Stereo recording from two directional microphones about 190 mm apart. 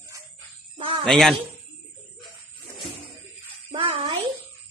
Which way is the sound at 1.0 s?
Centre (ahead or behind).